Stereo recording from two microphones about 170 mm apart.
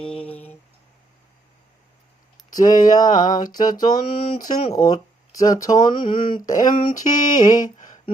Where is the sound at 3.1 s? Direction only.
50° left (ahead or behind).